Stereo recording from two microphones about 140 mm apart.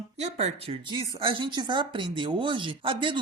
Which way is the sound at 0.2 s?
50° right (ahead or behind).